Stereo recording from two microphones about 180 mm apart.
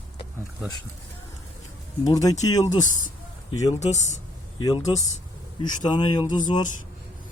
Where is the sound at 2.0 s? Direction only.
20° left (ahead or behind).